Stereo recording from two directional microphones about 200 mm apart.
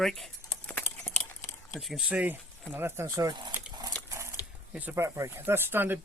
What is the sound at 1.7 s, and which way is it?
Speech, centre (ahead or behind).